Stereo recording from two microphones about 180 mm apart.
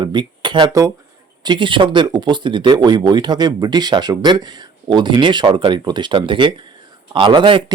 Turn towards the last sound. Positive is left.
turn(degrees=-30)  # may be behind; listen again after turning